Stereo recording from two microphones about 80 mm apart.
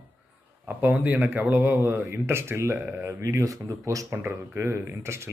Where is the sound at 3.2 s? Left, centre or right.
Right.